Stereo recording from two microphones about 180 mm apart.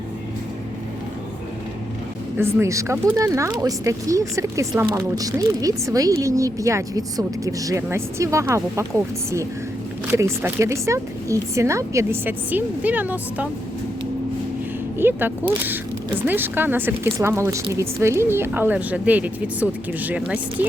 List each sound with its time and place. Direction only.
2.6 s speech: 15° right (ahead or behind)
10.1 s speech: 15° right (ahead or behind)
14.9 s speech: 10° right (ahead or behind)